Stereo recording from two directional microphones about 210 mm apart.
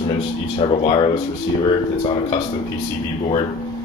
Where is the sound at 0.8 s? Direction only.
25° left (ahead or behind).